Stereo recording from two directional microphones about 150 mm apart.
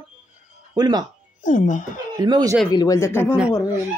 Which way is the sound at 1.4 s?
60° left (ahead or behind).